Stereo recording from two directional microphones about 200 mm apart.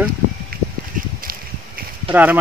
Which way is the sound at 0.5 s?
45° right (ahead or behind).